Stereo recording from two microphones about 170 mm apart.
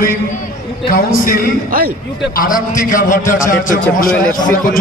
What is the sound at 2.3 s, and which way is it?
Speech, 55° left (ahead or behind).